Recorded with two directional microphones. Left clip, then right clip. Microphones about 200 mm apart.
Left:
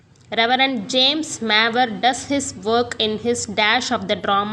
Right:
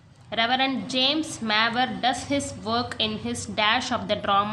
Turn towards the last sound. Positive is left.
turn(degrees=25)  # may be behind; listen again after turning